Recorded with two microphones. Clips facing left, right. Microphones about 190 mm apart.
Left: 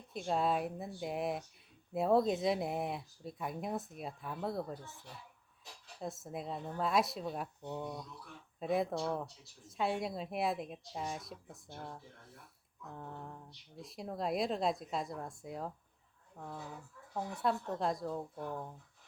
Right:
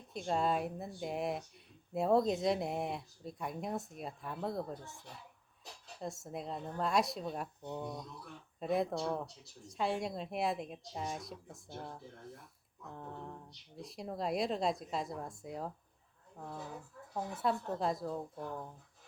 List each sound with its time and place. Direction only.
0.1 s speech: centre (ahead or behind)
6.0 s speech: centre (ahead or behind)
17.2 s speech: centre (ahead or behind)